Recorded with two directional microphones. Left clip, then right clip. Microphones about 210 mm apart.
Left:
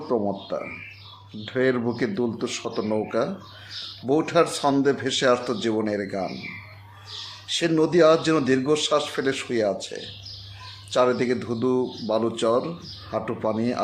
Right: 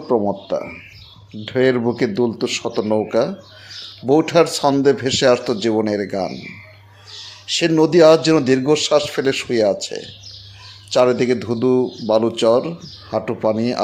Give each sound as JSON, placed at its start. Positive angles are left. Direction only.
{"t": 0.1, "sound": "speech", "side_deg": -25}
{"t": 7.4, "sound": "speech", "side_deg": -25}